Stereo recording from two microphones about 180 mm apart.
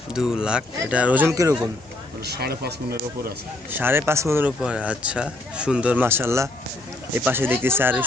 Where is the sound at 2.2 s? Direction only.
60° right (ahead or behind).